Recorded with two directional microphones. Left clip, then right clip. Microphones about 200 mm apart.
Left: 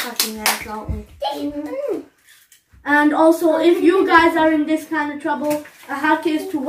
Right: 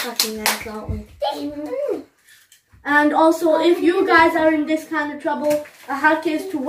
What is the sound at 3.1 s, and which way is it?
A woman's voice, 10° right (ahead or behind).